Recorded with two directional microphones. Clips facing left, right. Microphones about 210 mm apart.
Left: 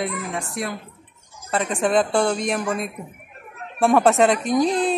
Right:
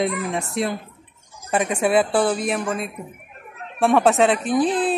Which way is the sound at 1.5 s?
10° right (ahead or behind).